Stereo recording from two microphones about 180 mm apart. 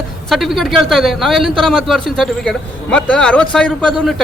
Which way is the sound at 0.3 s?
Centre (ahead or behind).